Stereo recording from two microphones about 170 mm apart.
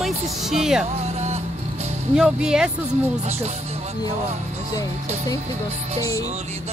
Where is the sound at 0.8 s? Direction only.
40° right (ahead or behind).